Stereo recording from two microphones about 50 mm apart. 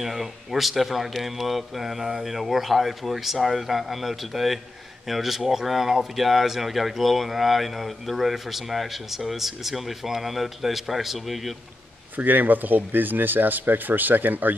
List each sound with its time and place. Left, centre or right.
0.0 s speech: centre
12.2 s speech: right